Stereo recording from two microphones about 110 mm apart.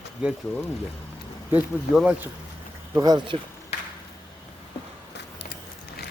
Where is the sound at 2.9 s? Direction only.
35° right (ahead or behind).